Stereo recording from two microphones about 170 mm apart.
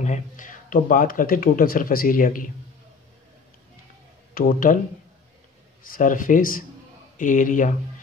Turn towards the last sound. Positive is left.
turn(degrees=50)  # may be behind; listen again after turning